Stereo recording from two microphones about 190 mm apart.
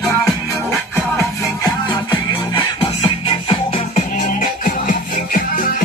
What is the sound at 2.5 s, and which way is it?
Music, 30° left (ahead or behind).